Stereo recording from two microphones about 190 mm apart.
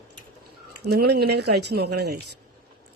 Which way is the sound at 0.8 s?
60° right (ahead or behind).